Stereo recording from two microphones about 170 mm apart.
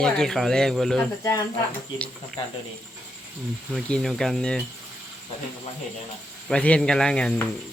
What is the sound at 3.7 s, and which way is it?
Speech, centre (ahead or behind).